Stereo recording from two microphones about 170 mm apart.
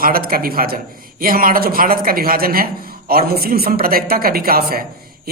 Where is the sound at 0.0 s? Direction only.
60° right (ahead or behind).